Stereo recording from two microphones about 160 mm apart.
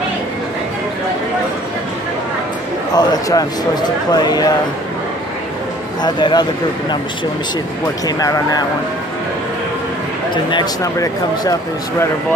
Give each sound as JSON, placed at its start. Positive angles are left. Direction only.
{"t": 2.9, "sound": "a man's voice", "side_deg": 25}
{"t": 6.0, "sound": "a man's voice", "side_deg": 25}
{"t": 8.2, "sound": "a man's voice", "side_deg": 20}
{"t": 10.3, "sound": "a man's voice", "side_deg": 25}